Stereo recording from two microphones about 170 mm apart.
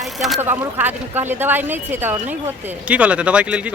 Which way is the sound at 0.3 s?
10° right (ahead or behind).